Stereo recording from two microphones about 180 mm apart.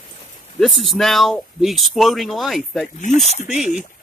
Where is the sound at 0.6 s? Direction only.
Centre (ahead or behind).